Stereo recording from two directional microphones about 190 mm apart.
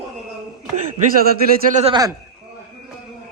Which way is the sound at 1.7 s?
35° right (ahead or behind).